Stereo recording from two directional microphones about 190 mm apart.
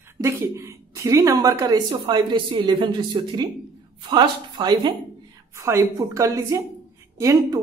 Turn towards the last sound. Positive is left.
turn(degrees=-15)  # may be behind; listen again after turning